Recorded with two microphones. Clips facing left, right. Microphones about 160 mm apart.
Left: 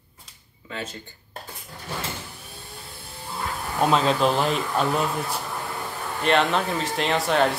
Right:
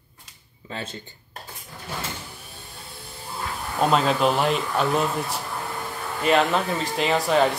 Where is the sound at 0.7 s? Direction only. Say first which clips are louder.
Even; 30° right (ahead or behind).